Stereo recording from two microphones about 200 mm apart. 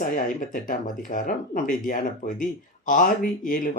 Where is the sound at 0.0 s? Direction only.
45° left (ahead or behind).